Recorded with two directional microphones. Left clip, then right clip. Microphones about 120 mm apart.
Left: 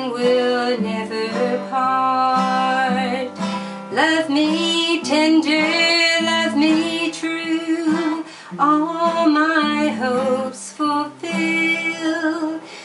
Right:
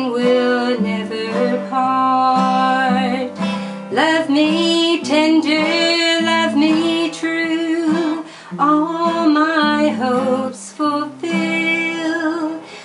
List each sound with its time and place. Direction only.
0.1 s music: 5° left (ahead or behind)
8.5 s music: 5° left (ahead or behind)